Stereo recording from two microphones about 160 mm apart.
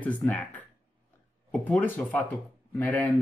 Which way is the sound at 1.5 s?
10° left (ahead or behind).